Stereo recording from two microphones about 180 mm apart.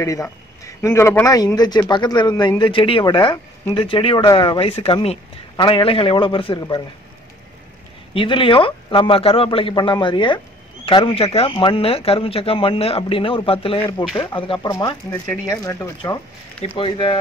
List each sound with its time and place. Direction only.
0.0 s speech: 15° left (ahead or behind)
8.1 s speech: 30° left (ahead or behind)
16.6 s speech: 30° left (ahead or behind)